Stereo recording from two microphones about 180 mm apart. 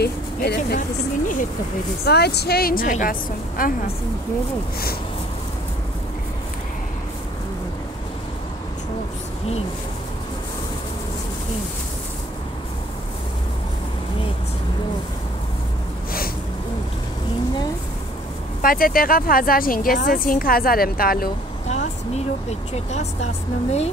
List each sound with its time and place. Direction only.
0.0 s speech: 65° left (ahead or behind)
2.0 s a woman's voice: 65° left (ahead or behind)
18.6 s a woman's voice: 50° left (ahead or behind)
21.6 s speech: 35° left (ahead or behind)